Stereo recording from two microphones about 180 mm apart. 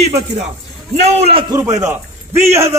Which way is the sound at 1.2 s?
30° right (ahead or behind).